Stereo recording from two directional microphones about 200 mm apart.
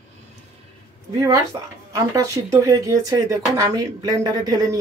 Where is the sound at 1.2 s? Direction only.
15° right (ahead or behind).